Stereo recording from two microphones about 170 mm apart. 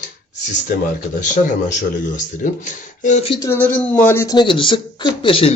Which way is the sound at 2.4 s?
50° left (ahead or behind).